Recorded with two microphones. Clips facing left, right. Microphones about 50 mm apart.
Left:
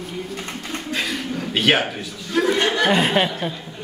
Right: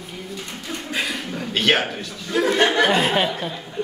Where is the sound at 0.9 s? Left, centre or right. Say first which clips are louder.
Left 1 dB; centre.